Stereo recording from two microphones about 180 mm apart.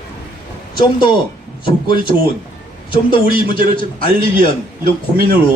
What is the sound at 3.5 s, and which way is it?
Speech, 50° right (ahead or behind).